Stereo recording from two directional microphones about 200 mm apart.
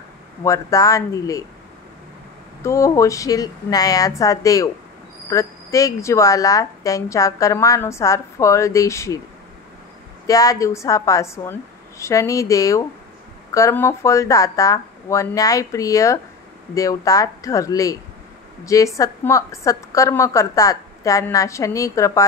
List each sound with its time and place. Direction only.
0.4 s a woman's voice: 15° left (ahead or behind)
2.6 s a woman's voice: 15° left (ahead or behind)
10.2 s a woman's voice: 15° left (ahead or behind)